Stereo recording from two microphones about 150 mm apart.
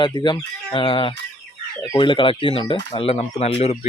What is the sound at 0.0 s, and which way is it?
Speech, 30° left (ahead or behind).